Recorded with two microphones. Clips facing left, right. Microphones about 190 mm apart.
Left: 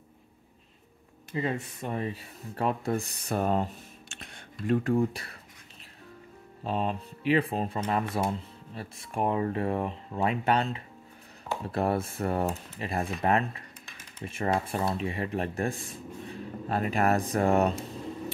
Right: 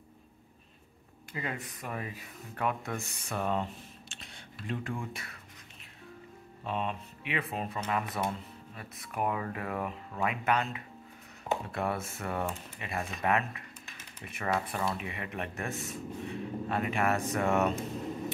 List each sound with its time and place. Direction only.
1.3 s speech: 25° left (ahead or behind)
4.1 s a sound: 50° left (ahead or behind); by 5.3 s 35° left (ahead or behind)
6.6 s speech: 35° left (ahead or behind)